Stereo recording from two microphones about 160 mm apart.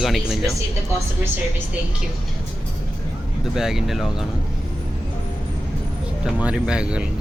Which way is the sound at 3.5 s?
5° right (ahead or behind).